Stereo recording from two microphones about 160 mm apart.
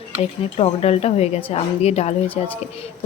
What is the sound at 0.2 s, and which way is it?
A woman's voice, 40° left (ahead or behind).